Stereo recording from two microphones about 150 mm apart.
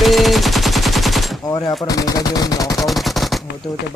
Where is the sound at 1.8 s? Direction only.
25° left (ahead or behind).